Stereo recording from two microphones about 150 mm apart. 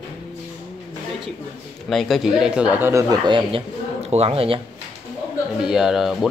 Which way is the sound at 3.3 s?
35° right (ahead or behind).